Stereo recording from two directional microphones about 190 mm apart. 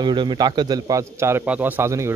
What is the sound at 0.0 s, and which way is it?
A man's voice, 25° right (ahead or behind).